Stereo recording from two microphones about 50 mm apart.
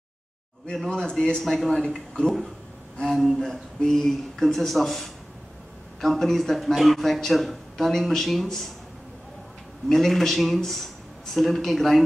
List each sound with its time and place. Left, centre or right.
0.7 s a man's voice: centre
3.0 s speech: centre
9.8 s speech: centre